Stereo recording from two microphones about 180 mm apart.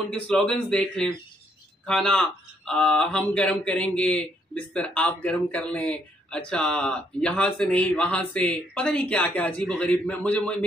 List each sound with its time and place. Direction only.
0.3 s speech: 5° left (ahead or behind)